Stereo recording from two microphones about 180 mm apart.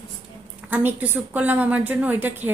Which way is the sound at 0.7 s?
10° right (ahead or behind).